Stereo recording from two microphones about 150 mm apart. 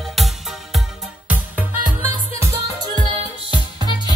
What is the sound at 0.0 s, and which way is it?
Music, centre (ahead or behind).